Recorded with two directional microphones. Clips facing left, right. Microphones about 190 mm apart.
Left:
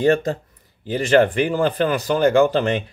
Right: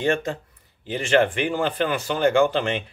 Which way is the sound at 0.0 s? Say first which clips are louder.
Left 6 dB; 35° left (ahead or behind).